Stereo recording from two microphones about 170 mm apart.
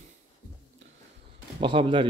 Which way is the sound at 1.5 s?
30° right (ahead or behind).